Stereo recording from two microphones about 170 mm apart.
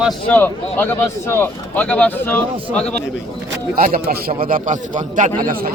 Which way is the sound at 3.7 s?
60° right (ahead or behind).